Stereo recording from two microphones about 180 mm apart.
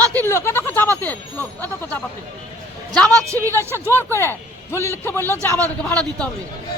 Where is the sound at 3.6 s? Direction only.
15° right (ahead or behind).